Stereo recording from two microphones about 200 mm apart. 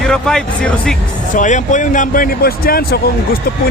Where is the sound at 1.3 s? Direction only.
40° left (ahead or behind).